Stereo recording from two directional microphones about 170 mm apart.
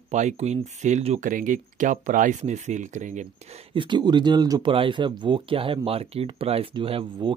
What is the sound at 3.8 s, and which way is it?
A man's voice, 25° right (ahead or behind).